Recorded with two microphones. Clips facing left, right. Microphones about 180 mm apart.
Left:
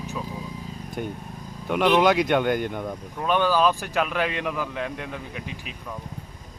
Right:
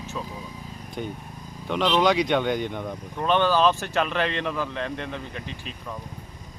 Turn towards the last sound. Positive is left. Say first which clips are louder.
# even
turn(degrees=10)  # may be behind; listen again after turning